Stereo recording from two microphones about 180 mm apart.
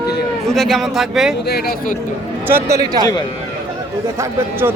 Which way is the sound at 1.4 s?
60° left (ahead or behind).